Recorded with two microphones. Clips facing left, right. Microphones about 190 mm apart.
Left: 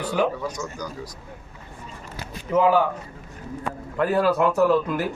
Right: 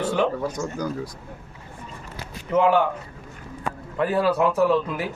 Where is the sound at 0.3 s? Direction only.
50° right (ahead or behind).